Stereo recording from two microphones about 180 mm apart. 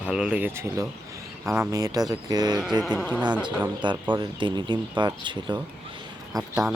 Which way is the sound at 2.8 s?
5° left (ahead or behind).